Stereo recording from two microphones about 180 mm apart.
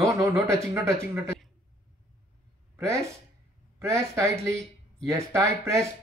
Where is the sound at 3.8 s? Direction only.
15° right (ahead or behind).